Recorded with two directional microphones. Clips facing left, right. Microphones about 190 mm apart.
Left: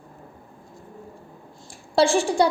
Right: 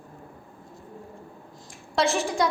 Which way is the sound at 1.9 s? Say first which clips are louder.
Left 5 dB; 30° left (ahead or behind).